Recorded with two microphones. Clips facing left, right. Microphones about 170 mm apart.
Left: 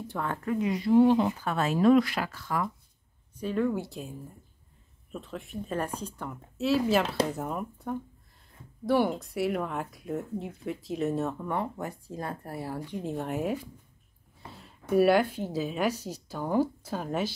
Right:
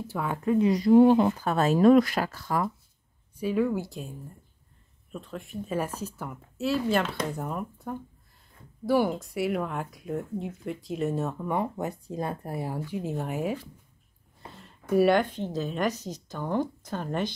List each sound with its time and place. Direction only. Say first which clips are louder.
0.1 s speech: right 1 dB; 10° right (ahead or behind)
0.4 s speech: right 8 dB; 20° right (ahead or behind)
0.7 s speech: right 3 dB; 40° right (ahead or behind)
3.3 s speech: right 2 dB; 5° right (ahead or behind)
5.1 s speech: right 1 dB; centre (ahead or behind)
11.5 s speech: right 3 dB; 20° right (ahead or behind)
12.9 s speech: left 1 dB; centre (ahead or behind)